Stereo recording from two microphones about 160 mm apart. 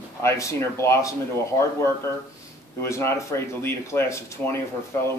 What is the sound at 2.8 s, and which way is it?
A man's voice, 15° left (ahead or behind).